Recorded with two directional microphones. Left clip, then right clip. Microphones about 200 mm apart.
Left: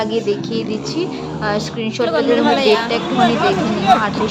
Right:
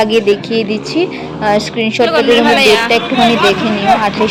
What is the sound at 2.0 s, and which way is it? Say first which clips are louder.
Speech: right 5 dB; 5° right (ahead or behind).